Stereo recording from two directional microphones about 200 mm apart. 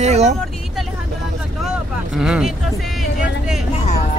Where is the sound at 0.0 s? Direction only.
35° right (ahead or behind).